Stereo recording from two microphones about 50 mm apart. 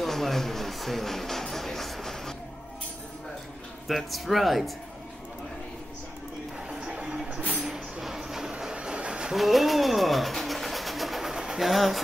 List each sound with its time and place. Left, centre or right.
0.0 s music: centre
3.8 s speech: centre
6.7 s music: right
7.6 s train: centre
9.3 s bird: centre